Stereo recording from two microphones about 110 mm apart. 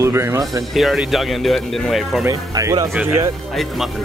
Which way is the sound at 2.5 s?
30° right (ahead or behind).